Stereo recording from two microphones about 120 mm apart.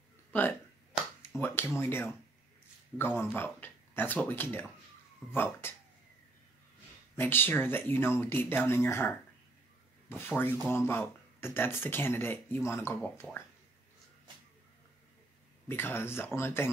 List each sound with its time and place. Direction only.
0.3 s speech: 15° left (ahead or behind)
7.2 s speech: 15° left (ahead or behind)
15.7 s speech: 20° left (ahead or behind)